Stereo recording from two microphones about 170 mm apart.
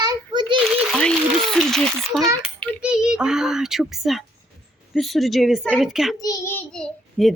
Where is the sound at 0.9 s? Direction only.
5° left (ahead or behind).